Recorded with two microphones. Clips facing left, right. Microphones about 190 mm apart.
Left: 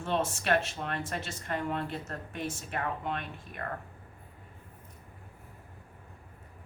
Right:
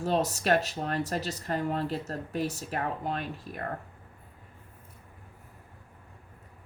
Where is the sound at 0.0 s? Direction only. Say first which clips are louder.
Right 3 dB; 40° right (ahead or behind).